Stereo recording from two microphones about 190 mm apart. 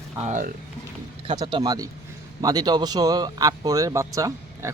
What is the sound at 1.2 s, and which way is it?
Speech, 25° right (ahead or behind).